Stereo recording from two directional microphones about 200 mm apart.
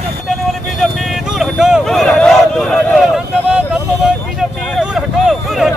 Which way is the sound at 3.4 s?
5° right (ahead or behind).